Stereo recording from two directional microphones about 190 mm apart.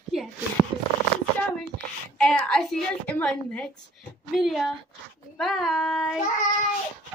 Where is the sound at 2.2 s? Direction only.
5° left (ahead or behind).